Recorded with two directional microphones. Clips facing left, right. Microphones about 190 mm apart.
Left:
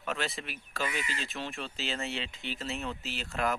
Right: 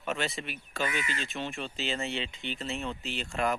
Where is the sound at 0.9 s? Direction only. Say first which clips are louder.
Right 2 dB; 30° left (ahead or behind).